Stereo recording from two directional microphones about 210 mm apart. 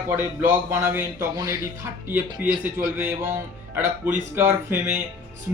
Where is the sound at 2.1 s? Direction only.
10° right (ahead or behind).